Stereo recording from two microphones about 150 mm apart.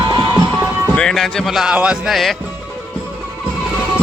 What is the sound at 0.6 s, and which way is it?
Music, 15° right (ahead or behind).